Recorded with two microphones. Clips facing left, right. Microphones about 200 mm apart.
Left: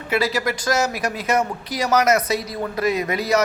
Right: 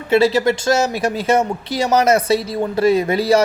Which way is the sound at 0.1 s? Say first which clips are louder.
Right 8 dB; 25° right (ahead or behind).